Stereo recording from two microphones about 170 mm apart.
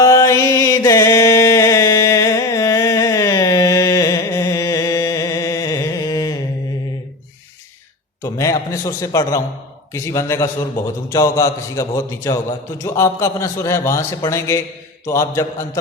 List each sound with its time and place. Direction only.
0.0 s music: 20° left (ahead or behind)
8.2 s a man's voice: 20° left (ahead or behind)